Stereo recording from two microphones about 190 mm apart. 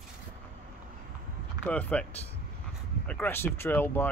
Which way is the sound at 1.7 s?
5° left (ahead or behind).